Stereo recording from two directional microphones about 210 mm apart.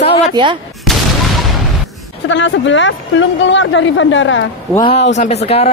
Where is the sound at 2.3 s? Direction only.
60° left (ahead or behind).